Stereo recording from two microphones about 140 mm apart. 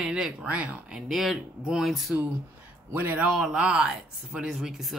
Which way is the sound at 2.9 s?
15° right (ahead or behind).